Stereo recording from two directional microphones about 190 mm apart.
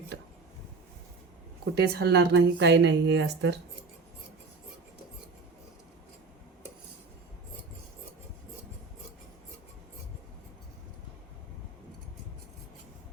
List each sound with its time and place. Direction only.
1.7 s speech: 60° right (ahead or behind)